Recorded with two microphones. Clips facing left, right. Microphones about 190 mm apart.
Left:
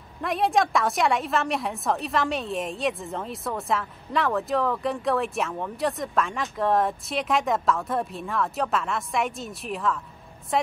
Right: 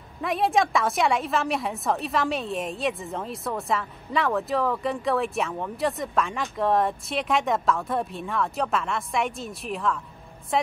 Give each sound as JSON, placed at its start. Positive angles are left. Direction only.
{"t": 0.2, "sound": "a woman's voice", "side_deg": 0}